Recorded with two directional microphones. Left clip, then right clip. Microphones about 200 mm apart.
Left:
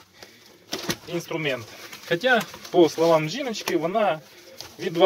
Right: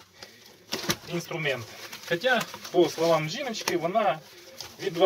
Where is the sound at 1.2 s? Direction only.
45° left (ahead or behind).